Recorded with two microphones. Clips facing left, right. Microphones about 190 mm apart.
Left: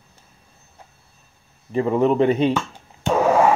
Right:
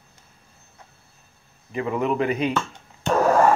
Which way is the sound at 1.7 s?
30° left (ahead or behind).